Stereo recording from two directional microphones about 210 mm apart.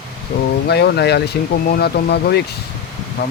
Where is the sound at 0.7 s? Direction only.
50° left (ahead or behind).